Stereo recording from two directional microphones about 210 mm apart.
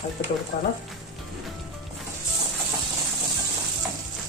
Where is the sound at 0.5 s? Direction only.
35° left (ahead or behind).